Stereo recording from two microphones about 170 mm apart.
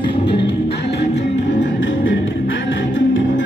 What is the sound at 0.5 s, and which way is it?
Music, 75° left (ahead or behind).